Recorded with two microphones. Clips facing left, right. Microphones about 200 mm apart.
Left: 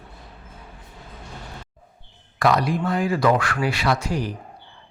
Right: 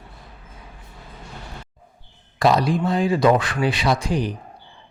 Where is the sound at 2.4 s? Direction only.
25° right (ahead or behind).